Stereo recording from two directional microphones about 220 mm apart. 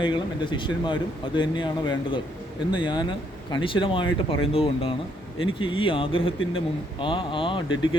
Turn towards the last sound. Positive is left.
turn(degrees=20)  # may be behind; listen again after turning